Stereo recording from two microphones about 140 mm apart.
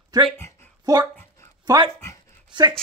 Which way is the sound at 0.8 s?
25° right (ahead or behind).